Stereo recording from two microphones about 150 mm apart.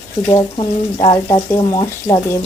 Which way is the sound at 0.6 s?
40° left (ahead or behind).